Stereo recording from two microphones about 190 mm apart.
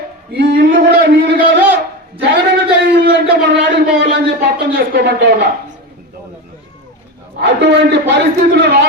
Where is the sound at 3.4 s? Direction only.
65° right (ahead or behind).